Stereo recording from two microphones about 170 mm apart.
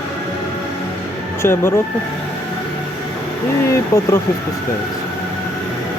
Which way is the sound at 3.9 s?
20° left (ahead or behind).